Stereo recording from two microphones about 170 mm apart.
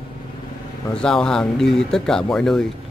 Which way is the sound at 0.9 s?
5° left (ahead or behind).